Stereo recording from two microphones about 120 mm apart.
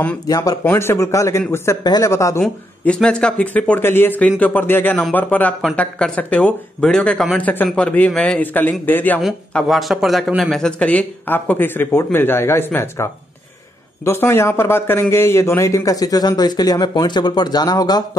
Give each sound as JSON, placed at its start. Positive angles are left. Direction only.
{"t": 0.3, "sound": "a man's voice", "side_deg": 30}
{"t": 2.8, "sound": "speech", "side_deg": 10}
{"t": 9.5, "sound": "a man's voice", "side_deg": 5}